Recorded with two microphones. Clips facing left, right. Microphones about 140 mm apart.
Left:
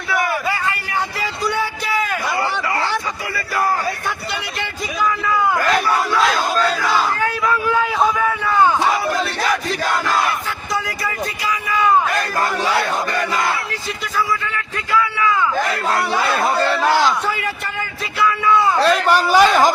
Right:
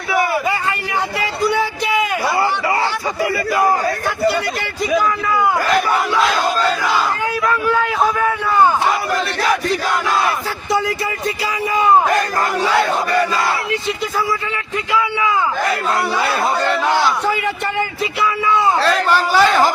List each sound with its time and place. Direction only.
7.4 s vehicle: 5° left (ahead or behind)
8.0 s a sound: 10° right (ahead or behind)
10.7 s a sound: 25° right (ahead or behind)
11.4 s vehicle: 30° right (ahead or behind)
14.2 s a man's voice: 25° right (ahead or behind)
18.2 s speech: 20° right (ahead or behind)
18.8 s a man's voice: 15° left (ahead or behind)